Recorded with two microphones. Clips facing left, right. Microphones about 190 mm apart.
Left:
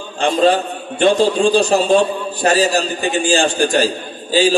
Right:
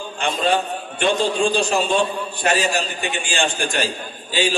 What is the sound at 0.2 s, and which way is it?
A man's voice, 35° left (ahead or behind).